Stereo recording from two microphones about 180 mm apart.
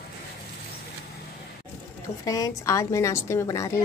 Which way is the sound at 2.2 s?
20° left (ahead or behind).